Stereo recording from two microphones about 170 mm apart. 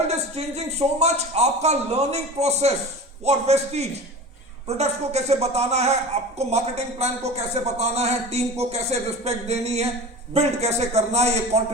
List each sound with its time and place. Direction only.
0.1 s a man's voice: 40° right (ahead or behind)